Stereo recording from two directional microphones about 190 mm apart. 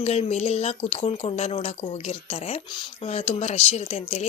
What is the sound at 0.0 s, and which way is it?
Speech, 35° left (ahead or behind).